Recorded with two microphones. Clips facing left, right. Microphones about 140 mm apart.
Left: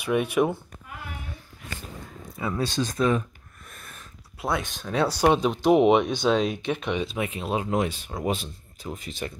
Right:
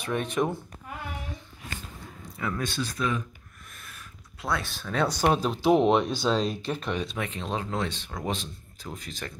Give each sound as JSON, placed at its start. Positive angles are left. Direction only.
{"t": 0.0, "sound": "speech", "side_deg": 10}
{"t": 2.3, "sound": "speech", "side_deg": 25}
{"t": 2.6, "sound": "speech", "side_deg": 40}
{"t": 3.8, "sound": "a sound", "side_deg": 45}
{"t": 4.4, "sound": "speech", "side_deg": 20}
{"t": 4.9, "sound": "speech", "side_deg": 5}